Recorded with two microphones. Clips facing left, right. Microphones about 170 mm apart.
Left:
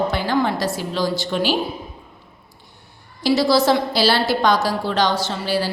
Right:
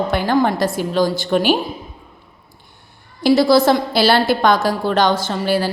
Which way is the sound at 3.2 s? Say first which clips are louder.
Right 4 dB; 50° right (ahead or behind).